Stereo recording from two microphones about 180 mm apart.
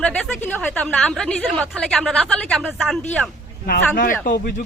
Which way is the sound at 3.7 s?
50° left (ahead or behind).